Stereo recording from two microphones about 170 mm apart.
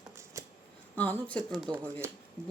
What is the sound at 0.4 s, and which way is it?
Shuffling cards, 20° right (ahead or behind).